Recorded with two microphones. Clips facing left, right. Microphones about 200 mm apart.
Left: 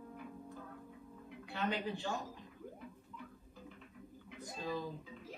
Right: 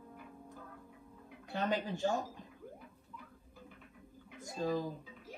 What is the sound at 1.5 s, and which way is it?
Speech, 45° right (ahead or behind).